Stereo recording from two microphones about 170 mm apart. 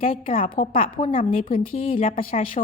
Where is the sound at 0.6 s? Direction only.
55° left (ahead or behind).